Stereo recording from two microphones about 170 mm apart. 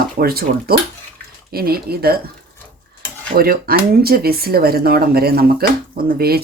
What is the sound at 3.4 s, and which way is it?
Speech, 60° right (ahead or behind).